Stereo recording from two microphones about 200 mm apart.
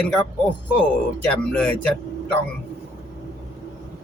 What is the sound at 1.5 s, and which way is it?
Speech, 5° left (ahead or behind).